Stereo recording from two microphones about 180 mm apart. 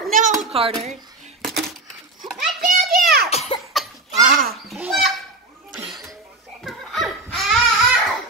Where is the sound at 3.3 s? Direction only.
35° left (ahead or behind).